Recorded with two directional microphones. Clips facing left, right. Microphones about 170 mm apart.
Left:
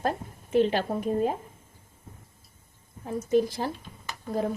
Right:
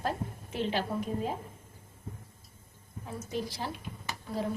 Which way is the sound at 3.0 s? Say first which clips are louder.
Left 12 dB; 50° left (ahead or behind).